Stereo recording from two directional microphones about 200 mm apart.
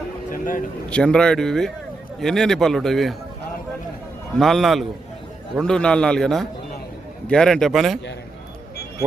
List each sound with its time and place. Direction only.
0.3 s a sound: 40° left (ahead or behind)
0.9 s a man's voice: 5° left (ahead or behind)
4.4 s a man's voice: centre (ahead or behind)